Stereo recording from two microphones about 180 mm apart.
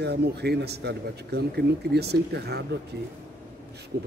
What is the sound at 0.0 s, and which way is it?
Speech, 65° right (ahead or behind).